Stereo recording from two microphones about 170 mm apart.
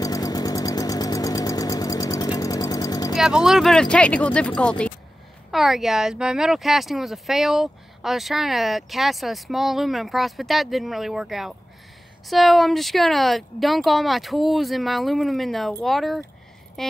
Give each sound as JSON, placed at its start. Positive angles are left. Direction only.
{"t": 0.0, "sound": "vehicle", "side_deg": 20}
{"t": 3.2, "sound": "speech", "side_deg": -5}